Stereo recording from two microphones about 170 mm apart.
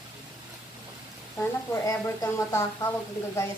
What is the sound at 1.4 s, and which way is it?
Speech, 15° left (ahead or behind).